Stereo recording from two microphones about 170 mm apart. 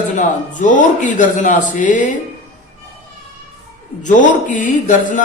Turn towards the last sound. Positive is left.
turn(degrees=50)  # may be behind; listen again after turning